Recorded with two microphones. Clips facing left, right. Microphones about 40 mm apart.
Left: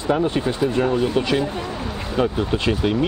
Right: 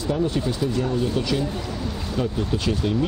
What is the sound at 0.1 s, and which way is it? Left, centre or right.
Speech, left.